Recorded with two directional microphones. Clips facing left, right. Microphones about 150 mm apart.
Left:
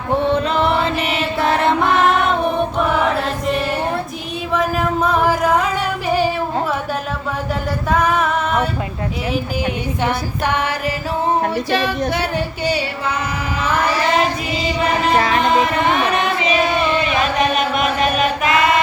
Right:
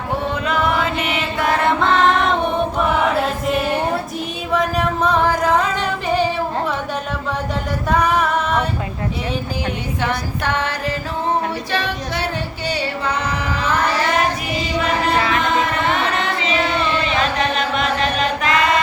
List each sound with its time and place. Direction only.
0.3 s music: 30° left (ahead or behind)
1.4 s chant: 25° left (ahead or behind)
1.8 s female singing: 10° left (ahead or behind)
2.7 s choir: centre (ahead or behind)
4.5 s music: 10° left (ahead or behind)
10.0 s a capella: 15° left (ahead or behind)
15.4 s chant: 20° left (ahead or behind)